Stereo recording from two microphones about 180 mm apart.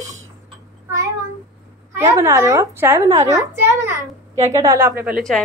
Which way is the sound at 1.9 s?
15° right (ahead or behind).